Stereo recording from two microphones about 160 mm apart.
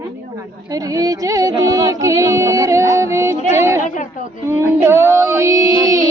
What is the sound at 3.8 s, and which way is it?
Speech, 50° left (ahead or behind).